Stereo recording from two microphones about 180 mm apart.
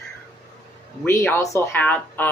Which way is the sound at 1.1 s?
15° left (ahead or behind).